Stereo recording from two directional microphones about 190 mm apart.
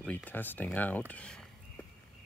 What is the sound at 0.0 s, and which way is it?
Speech, 10° left (ahead or behind).